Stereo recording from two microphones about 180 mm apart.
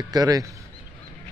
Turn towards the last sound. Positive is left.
turn(degrees=-20)  # may be behind; listen again after turning